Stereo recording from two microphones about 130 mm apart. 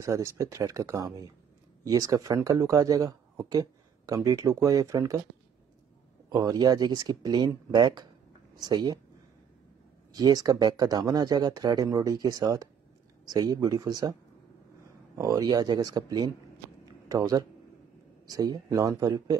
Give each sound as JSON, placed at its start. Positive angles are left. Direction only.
{"t": 0.0, "sound": "speech", "side_deg": -25}
{"t": 6.3, "sound": "speech", "side_deg": -30}
{"t": 10.1, "sound": "speech", "side_deg": -30}
{"t": 15.1, "sound": "speech", "side_deg": -30}
{"t": 16.8, "sound": "a sound", "side_deg": -30}
{"t": 18.2, "sound": "speech", "side_deg": -30}